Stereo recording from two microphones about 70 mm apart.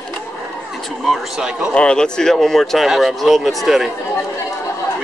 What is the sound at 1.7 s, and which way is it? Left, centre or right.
Speech, centre.